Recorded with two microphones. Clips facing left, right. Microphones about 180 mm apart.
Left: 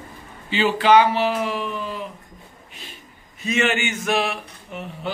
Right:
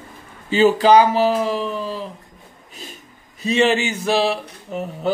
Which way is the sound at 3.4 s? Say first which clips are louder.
Right 5 dB; 35° right (ahead or behind).